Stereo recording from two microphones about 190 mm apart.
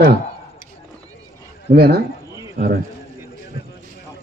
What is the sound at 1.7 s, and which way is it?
Speech, 55° right (ahead or behind).